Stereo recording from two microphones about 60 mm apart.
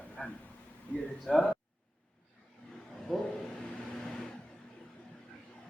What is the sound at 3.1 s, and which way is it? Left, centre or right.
Speech, centre.